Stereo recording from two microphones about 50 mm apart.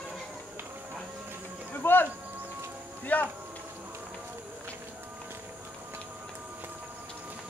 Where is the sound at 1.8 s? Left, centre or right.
Left.